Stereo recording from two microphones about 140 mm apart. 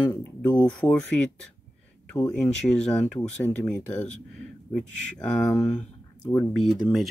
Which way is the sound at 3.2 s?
20° left (ahead or behind).